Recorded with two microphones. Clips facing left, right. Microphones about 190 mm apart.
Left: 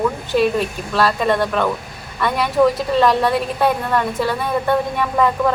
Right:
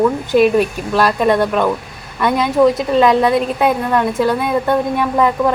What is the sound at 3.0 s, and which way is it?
Speech, 15° right (ahead or behind).